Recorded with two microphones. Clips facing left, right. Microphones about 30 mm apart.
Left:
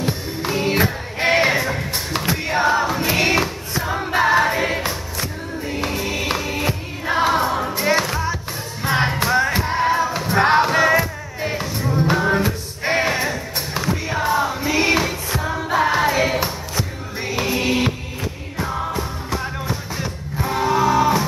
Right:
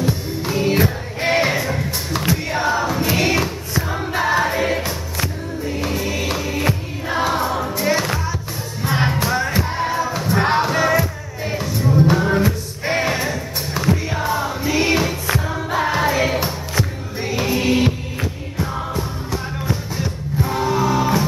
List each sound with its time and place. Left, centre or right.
0.0 s music: left
8.8 s music: centre
20.4 s music: centre